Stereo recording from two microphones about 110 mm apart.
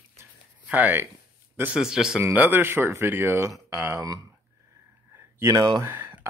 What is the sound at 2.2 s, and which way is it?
Speech, 15° right (ahead or behind).